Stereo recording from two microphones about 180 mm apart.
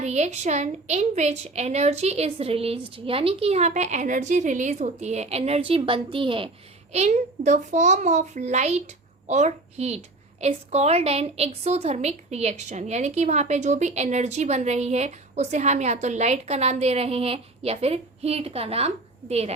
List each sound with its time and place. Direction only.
0.0 s a woman's voice: 40° right (ahead or behind)
6.9 s a woman's voice: 40° right (ahead or behind)